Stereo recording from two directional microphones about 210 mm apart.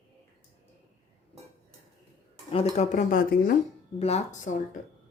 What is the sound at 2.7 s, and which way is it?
Speech, 35° left (ahead or behind).